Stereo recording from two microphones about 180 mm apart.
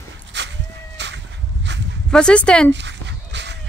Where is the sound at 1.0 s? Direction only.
75° right (ahead or behind).